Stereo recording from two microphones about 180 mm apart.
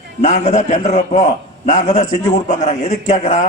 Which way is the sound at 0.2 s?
40° left (ahead or behind).